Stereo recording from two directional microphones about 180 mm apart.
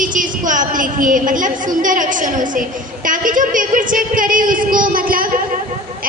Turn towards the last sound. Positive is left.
turn(degrees=-50)  # may be behind; listen again after turning